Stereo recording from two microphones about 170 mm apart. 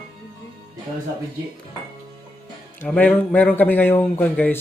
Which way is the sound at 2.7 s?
10° left (ahead or behind).